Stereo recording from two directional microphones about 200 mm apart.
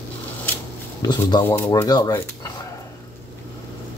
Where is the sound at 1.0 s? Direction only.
20° left (ahead or behind).